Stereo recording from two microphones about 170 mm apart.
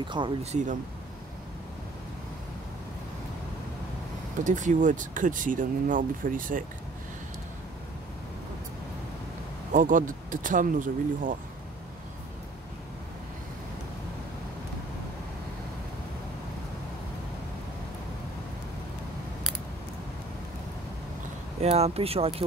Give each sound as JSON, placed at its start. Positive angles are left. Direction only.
{"t": 0.0, "sound": "speech", "side_deg": -30}
{"t": 4.5, "sound": "speech", "side_deg": -50}
{"t": 9.7, "sound": "speech", "side_deg": -50}
{"t": 21.5, "sound": "speech", "side_deg": -40}